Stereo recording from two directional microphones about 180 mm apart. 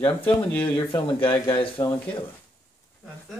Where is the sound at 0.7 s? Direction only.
30° left (ahead or behind).